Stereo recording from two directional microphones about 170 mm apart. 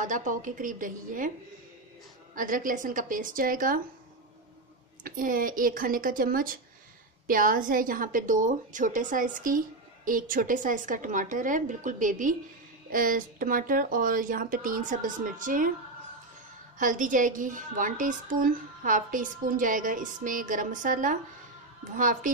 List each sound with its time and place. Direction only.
0.0 s a woman's voice: 50° right (ahead or behind)
2.3 s a woman's voice: 55° right (ahead or behind)
5.0 s a woman's voice: 55° right (ahead or behind)
16.7 s a woman's voice: 50° right (ahead or behind)